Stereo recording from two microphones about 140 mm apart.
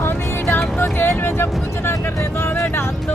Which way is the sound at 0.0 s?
15° left (ahead or behind).